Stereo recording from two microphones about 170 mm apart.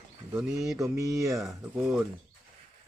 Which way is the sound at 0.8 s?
20° right (ahead or behind).